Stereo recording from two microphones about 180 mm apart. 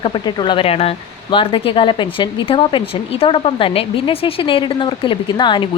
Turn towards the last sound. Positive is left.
turn(degrees=25)  # may be behind; listen again after turning